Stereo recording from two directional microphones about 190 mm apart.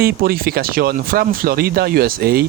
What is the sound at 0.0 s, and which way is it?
Speech, 50° right (ahead or behind).